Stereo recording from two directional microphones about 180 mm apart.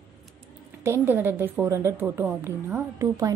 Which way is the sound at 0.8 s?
15° right (ahead or behind).